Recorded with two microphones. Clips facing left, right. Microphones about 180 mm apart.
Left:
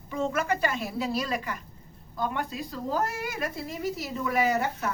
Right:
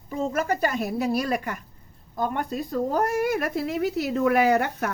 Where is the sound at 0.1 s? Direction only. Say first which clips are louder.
Right 2 dB; 40° right (ahead or behind).